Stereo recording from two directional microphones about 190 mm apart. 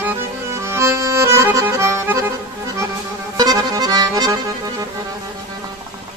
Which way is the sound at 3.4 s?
20° right (ahead or behind).